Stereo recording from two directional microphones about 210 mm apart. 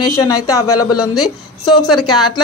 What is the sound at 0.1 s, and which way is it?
Speech, 15° left (ahead or behind).